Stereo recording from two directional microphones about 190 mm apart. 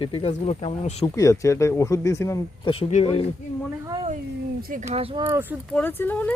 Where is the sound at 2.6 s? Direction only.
30° left (ahead or behind).